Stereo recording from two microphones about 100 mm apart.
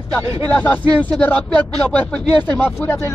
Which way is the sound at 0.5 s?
15° left (ahead or behind).